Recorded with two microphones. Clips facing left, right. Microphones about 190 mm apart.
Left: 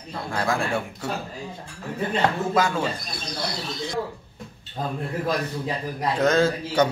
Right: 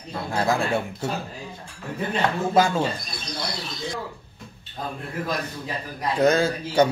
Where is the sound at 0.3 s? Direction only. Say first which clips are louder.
Right 2 dB; 20° right (ahead or behind).